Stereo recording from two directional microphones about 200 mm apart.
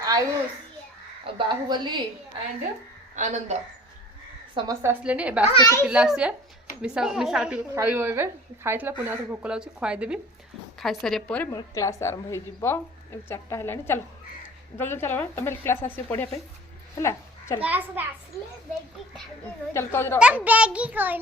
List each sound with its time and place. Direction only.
0.0 s a sound: 20° right (ahead or behind)
1.2 s a woman's voice: 25° right (ahead or behind)
3.2 s a woman's voice: 35° right (ahead or behind)
4.5 s a child's voice: 15° right (ahead or behind)
5.5 s a woman's voice: 15° left (ahead or behind)
5.8 s a woman's voice: 5° right (ahead or behind)
11.5 s a woman's voice: 15° left (ahead or behind)
17.6 s a child's voice: 10° right (ahead or behind)
19.7 s a woman's voice: 10° left (ahead or behind)
20.1 s a child's voice: 5° right (ahead or behind)